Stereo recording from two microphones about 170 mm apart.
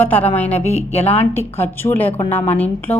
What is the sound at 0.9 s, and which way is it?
A woman's voice, 10° left (ahead or behind).